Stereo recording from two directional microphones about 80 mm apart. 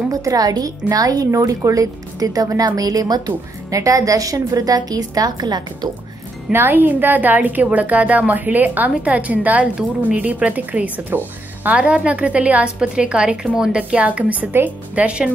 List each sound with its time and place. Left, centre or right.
0.1 s a woman's voice: right
6.5 s a woman's voice: right